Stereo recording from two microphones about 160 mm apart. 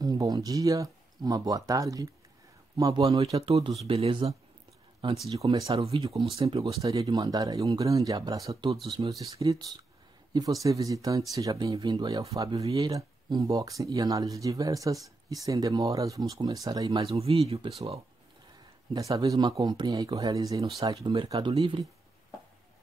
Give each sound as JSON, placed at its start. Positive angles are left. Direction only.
{"t": 0.0, "sound": "speech", "side_deg": -25}
{"t": 3.8, "sound": "speech", "side_deg": -35}
{"t": 5.4, "sound": "speech", "side_deg": -30}
{"t": 6.8, "sound": "speech", "side_deg": -20}
{"t": 17.0, "sound": "speech", "side_deg": -35}
{"t": 18.9, "sound": "speech", "side_deg": -20}
{"t": 20.8, "sound": "speech", "side_deg": -35}